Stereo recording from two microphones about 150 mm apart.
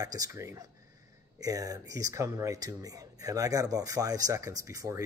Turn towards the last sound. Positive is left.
turn(degrees=-20)  # may be behind; listen again after turning